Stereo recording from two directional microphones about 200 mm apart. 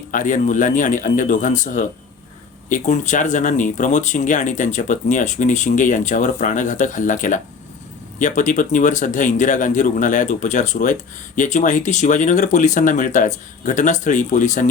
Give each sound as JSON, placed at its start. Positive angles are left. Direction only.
{"t": 0.1, "sound": "speech", "side_deg": 40}